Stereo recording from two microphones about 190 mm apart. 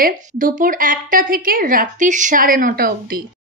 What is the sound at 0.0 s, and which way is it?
A woman's voice, 45° right (ahead or behind).